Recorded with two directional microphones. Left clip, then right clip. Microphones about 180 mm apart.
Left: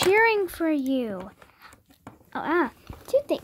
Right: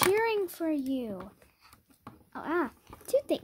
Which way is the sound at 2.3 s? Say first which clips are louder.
Left 8 dB; 20° left (ahead or behind).